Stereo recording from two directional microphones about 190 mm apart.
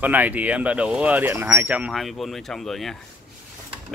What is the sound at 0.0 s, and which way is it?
Speech, 10° right (ahead or behind).